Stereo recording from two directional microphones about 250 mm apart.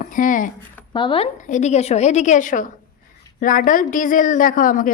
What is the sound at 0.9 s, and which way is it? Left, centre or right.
A woman's voice, centre.